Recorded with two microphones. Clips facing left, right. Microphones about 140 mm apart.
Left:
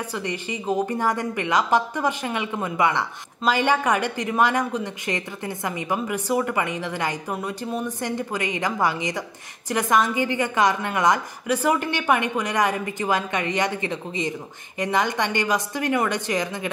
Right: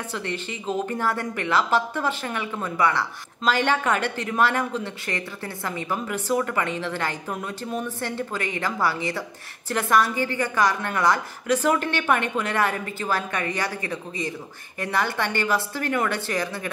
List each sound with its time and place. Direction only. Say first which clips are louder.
0.1 s speech: left 2 dB; 10° left (ahead or behind)